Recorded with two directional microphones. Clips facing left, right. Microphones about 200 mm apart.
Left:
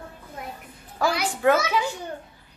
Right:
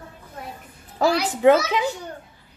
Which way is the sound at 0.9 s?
20° right (ahead or behind).